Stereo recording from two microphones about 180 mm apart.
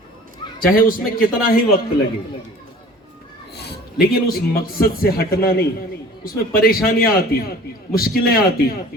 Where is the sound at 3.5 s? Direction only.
65° left (ahead or behind).